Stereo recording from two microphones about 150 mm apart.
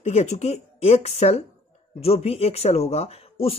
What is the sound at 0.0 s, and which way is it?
Speech, 50° left (ahead or behind).